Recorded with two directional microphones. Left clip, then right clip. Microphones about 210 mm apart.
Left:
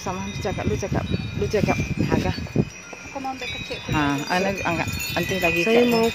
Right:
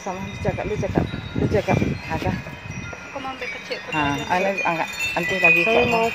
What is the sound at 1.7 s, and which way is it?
Speech, 45° left (ahead or behind).